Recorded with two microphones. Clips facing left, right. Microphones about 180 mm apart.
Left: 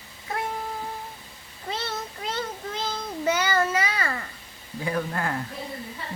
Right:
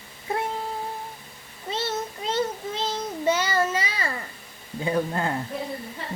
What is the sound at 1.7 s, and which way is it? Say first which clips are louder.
Child singing: right 5 dB; 25° right (ahead or behind).